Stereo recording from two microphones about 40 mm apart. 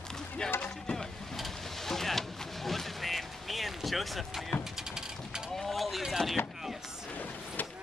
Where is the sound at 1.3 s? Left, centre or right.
Centre.